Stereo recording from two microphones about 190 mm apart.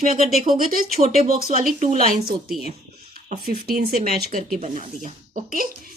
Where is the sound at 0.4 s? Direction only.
50° right (ahead or behind).